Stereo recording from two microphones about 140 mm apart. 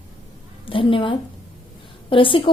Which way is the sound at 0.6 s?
40° left (ahead or behind).